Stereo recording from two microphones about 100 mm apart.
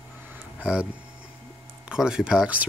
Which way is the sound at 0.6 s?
10° right (ahead or behind).